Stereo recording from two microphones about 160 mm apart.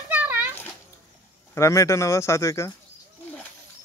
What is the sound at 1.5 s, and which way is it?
Speech, 20° left (ahead or behind).